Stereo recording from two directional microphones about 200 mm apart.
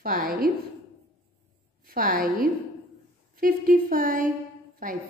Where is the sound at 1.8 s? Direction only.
45° right (ahead or behind).